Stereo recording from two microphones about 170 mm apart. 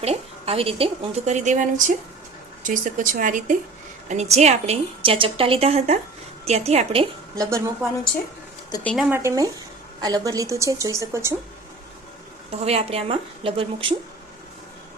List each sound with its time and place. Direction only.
0.0 s a woman's voice: 35° right (ahead or behind)
7.3 s a woman's voice: 20° right (ahead or behind)
9.0 s a woman's voice: 10° right (ahead or behind)
12.5 s a woman's voice: 35° right (ahead or behind)